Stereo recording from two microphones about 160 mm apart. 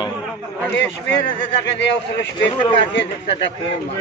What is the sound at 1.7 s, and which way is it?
Speech, 90° left.